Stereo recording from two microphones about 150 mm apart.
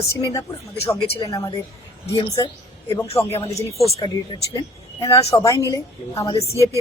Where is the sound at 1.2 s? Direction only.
25° left (ahead or behind).